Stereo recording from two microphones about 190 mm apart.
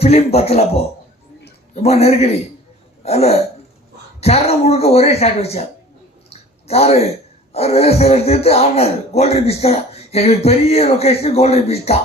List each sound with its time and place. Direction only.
0.0 s speech: 35° left (ahead or behind)
3.0 s throat clearing: 35° left (ahead or behind)
4.2 s speech: 35° left (ahead or behind)
6.3 s a sound: 35° left (ahead or behind)
7.5 s speech: 35° left (ahead or behind)